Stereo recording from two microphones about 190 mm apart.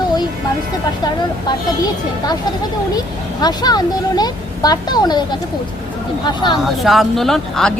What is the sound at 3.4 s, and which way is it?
Speech, 20° left (ahead or behind).